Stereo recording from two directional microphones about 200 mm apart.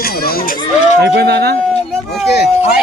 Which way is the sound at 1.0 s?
55° right (ahead or behind).